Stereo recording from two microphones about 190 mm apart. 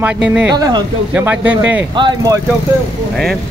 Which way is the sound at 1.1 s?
10° right (ahead or behind).